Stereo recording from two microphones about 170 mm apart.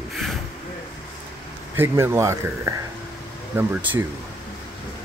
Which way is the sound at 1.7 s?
15° right (ahead or behind).